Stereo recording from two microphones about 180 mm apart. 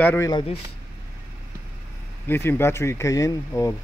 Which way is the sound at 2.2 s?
10° left (ahead or behind).